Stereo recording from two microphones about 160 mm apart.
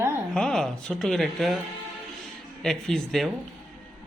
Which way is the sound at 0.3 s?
5° left (ahead or behind).